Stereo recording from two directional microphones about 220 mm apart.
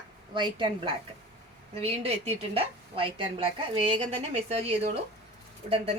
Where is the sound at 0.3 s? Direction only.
20° right (ahead or behind).